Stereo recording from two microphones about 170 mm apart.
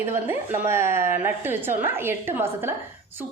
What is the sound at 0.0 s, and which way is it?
A woman's voice, 15° right (ahead or behind).